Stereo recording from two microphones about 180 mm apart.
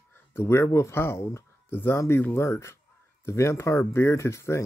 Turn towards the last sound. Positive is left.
turn(degrees=15)  # may be behind; listen again after turning